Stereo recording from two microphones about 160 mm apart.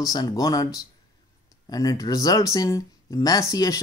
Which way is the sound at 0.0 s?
20° left (ahead or behind).